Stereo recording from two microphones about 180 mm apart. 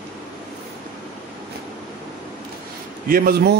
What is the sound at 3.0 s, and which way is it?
Speech, 55° right (ahead or behind).